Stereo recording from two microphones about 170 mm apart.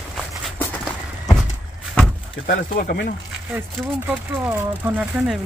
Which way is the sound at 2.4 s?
55° left (ahead or behind).